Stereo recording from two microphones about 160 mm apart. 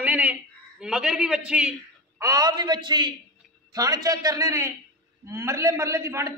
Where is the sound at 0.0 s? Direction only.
10° right (ahead or behind).